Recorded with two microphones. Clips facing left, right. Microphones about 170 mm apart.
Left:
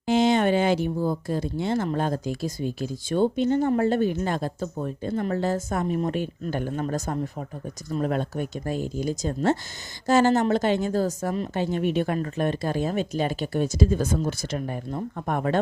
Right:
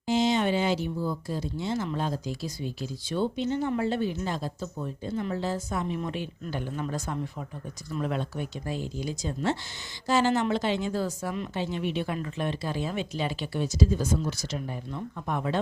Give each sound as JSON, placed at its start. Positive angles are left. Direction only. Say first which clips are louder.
{"t": 0.0, "sound": "speech", "louder": "left 4 dB", "side_deg": 60}